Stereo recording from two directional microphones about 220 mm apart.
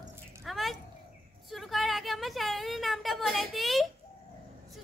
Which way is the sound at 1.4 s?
Centre (ahead or behind).